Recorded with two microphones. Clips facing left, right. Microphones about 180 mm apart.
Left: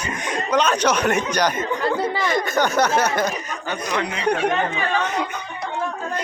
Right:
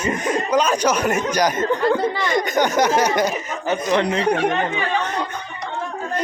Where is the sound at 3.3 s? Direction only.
25° right (ahead or behind).